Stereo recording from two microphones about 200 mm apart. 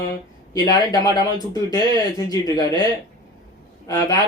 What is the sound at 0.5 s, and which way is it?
Speech, 20° left (ahead or behind).